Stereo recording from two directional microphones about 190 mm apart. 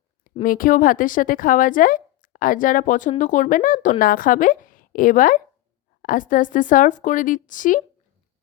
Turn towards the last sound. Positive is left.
turn(degrees=45)  # may be behind; listen again after turning